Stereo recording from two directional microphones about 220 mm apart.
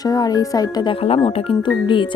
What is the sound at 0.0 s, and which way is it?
Speech, 15° left (ahead or behind).